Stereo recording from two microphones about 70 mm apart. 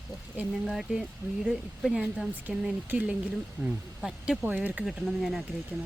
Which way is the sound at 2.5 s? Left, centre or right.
Centre.